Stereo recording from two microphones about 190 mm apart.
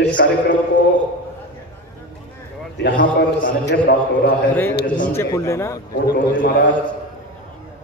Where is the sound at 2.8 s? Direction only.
60° left (ahead or behind).